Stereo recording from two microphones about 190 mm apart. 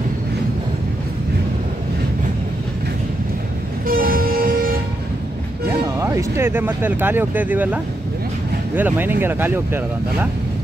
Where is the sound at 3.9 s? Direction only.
50° right (ahead or behind).